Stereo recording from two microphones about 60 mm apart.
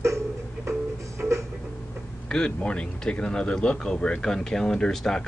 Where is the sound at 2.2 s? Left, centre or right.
Centre.